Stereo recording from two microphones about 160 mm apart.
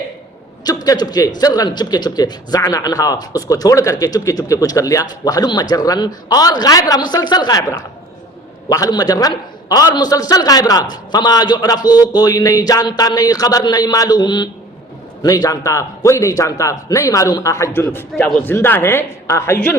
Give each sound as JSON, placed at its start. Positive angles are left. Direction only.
{"t": 0.6, "sound": "a man's voice", "side_deg": 25}